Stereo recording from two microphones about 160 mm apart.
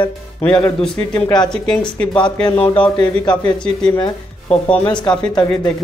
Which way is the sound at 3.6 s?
5° left (ahead or behind).